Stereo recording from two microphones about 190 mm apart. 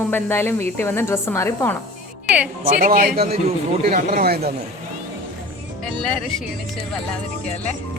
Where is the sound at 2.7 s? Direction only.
45° right (ahead or behind).